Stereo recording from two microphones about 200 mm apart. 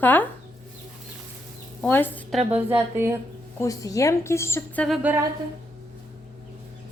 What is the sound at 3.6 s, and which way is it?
A woman's voice, 15° left (ahead or behind).